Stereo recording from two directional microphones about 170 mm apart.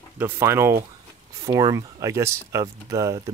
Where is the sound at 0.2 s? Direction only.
15° right (ahead or behind).